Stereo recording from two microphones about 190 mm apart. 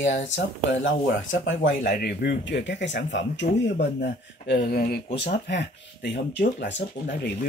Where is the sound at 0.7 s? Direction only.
75° left (ahead or behind).